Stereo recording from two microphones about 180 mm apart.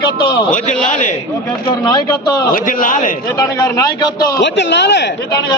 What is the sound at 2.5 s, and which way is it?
Speech, 50° left (ahead or behind).